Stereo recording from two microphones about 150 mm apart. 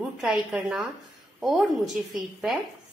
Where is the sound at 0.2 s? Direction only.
5° right (ahead or behind).